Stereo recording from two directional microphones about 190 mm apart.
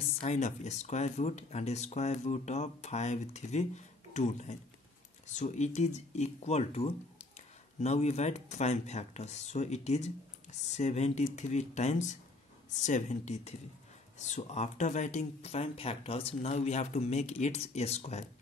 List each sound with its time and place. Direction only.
0.2 s speech: 40° left (ahead or behind)